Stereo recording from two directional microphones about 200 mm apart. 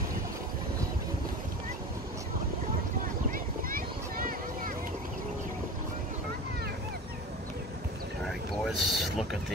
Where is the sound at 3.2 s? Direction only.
45° right (ahead or behind).